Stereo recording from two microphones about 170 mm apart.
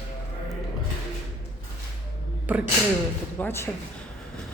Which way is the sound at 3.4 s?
15° left (ahead or behind).